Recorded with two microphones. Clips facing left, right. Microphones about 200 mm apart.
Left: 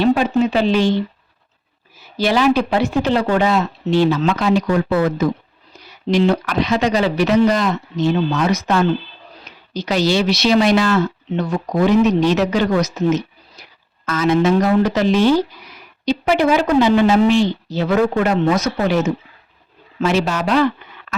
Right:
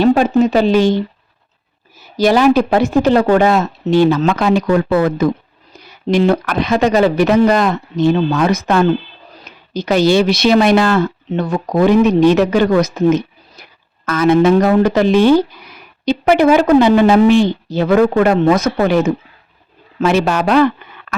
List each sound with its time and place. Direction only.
0.0 s a sound: 45° right (ahead or behind)
0.3 s speech: 45° right (ahead or behind)
2.1 s a woman's voice: 45° right (ahead or behind)